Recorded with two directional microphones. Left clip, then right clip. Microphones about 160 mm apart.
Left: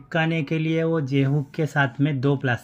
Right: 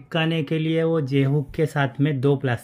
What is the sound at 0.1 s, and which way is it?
Speech, 20° right (ahead or behind).